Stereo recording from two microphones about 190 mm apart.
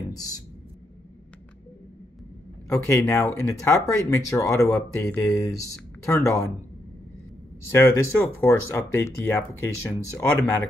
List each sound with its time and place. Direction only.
0.1 s speech: 20° left (ahead or behind)
2.7 s speech: 15° left (ahead or behind)
7.7 s speech: 10° left (ahead or behind)